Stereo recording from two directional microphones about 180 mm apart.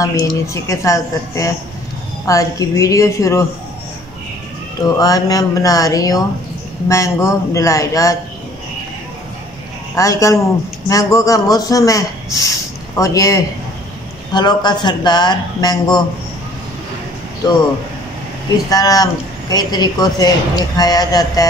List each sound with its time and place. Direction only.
0.0 s a man's voice: 20° left (ahead or behind)
4.9 s a man's voice: 20° left (ahead or behind)
9.9 s a man's voice: 15° left (ahead or behind)
17.4 s a man's voice: 20° left (ahead or behind)
18.7 s a man's voice: 20° left (ahead or behind)